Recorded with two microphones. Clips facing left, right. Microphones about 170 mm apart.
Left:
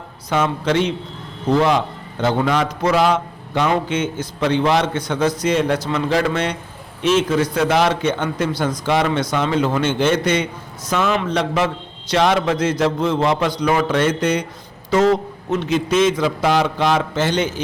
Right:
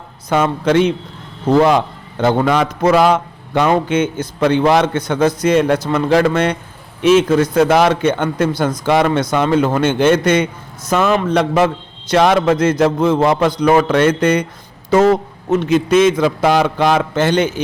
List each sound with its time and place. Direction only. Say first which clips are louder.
0.3 s a man's voice: right 4 dB; 50° right (ahead or behind)